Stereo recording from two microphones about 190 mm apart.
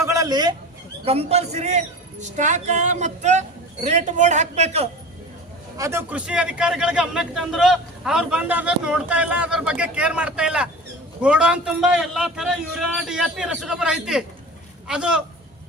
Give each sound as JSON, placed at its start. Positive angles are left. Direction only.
{"t": 0.0, "sound": "a sound", "side_deg": -15}
{"t": 1.0, "sound": "a man's voice", "side_deg": -30}
{"t": 5.7, "sound": "a man's voice", "side_deg": -15}